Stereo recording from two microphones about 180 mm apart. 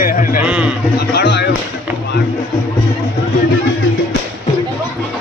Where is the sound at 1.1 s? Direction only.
65° left (ahead or behind).